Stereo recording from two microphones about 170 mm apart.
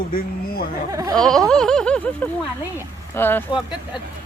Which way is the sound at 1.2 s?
5° left (ahead or behind).